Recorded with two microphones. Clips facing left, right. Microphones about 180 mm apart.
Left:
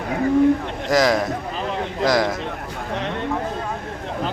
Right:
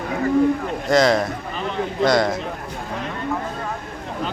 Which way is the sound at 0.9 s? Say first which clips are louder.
Right 1 dB; centre (ahead or behind).